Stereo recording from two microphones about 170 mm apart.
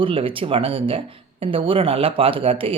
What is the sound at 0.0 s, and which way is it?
Speech, 30° right (ahead or behind).